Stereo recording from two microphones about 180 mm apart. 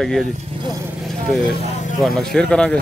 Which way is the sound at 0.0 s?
Centre (ahead or behind).